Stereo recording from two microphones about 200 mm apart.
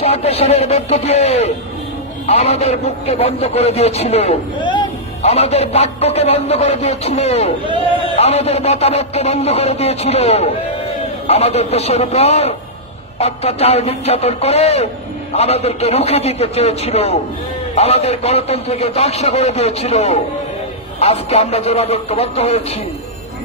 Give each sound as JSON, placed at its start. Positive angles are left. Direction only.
{"t": 0.0, "sound": "a man's voice", "side_deg": 30}